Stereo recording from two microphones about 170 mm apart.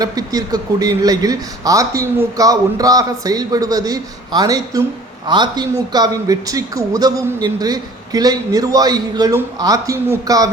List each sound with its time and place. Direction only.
0.0 s a man's voice: 20° right (ahead or behind)